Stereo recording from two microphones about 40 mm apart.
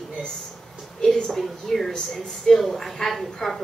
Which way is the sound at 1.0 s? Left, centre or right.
Centre.